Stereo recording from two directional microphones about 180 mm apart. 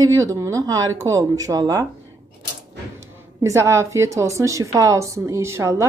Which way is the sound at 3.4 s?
15° right (ahead or behind).